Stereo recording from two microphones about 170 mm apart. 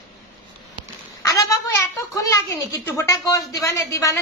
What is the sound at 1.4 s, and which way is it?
A woman's voice, 15° left (ahead or behind).